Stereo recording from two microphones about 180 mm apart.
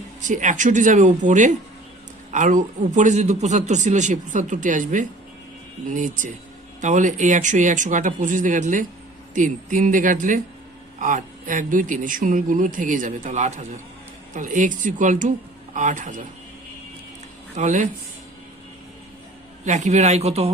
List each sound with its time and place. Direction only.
0.2 s a man's voice: 45° right (ahead or behind)
17.6 s speech: 40° right (ahead or behind)
19.6 s speech: 40° right (ahead or behind)